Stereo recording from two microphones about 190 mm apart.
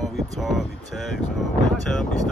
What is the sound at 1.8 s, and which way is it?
Speech, centre (ahead or behind).